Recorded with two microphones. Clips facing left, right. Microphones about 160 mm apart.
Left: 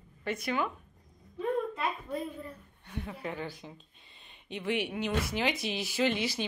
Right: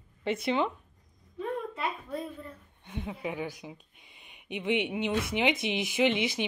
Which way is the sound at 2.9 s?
20° right (ahead or behind).